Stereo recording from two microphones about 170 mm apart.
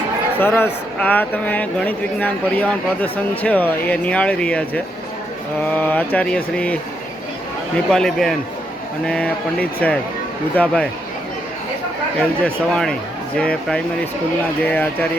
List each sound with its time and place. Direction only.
0.3 s speech: 10° left (ahead or behind)
7.9 s speech: 5° left (ahead or behind)
12.5 s speech: 5° left (ahead or behind)